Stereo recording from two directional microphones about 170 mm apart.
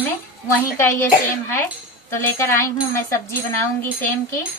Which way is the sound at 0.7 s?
15° left (ahead or behind).